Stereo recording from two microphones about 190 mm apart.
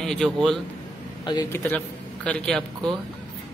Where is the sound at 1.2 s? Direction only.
25° left (ahead or behind).